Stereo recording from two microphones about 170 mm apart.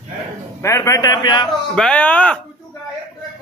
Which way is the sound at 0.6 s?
20° left (ahead or behind).